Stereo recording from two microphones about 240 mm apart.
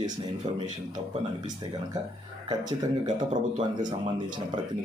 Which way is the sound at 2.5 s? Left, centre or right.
Centre.